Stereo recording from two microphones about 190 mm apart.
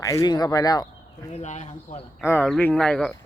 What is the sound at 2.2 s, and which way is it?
Speech, 10° left (ahead or behind).